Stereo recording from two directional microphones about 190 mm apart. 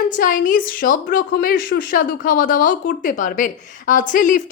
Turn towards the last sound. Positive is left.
turn(degrees=45)  # may be behind; listen again after turning